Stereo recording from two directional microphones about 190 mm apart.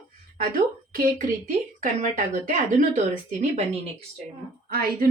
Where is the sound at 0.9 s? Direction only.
50° right (ahead or behind).